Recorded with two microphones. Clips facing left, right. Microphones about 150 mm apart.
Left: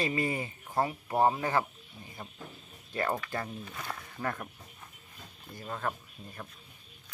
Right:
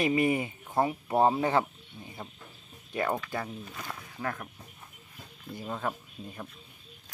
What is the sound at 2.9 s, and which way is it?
Speech, 15° right (ahead or behind).